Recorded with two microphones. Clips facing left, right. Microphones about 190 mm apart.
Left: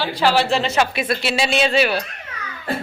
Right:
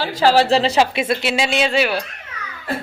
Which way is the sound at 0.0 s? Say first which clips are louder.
Right 3 dB; 40° right (ahead or behind).